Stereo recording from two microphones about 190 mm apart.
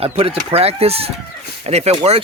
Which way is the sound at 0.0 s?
30° right (ahead or behind).